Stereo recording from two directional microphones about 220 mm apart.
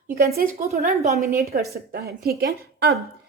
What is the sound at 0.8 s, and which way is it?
Speech, 30° right (ahead or behind).